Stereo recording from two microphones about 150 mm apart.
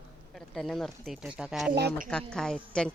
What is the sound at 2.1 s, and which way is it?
Speech, 5° left (ahead or behind).